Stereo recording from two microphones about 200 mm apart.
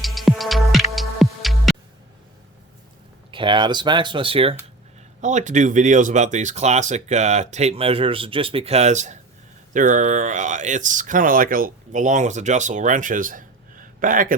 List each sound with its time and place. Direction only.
0.0 s music: centre (ahead or behind)
3.3 s speech: 25° right (ahead or behind)
5.2 s speech: 35° right (ahead or behind)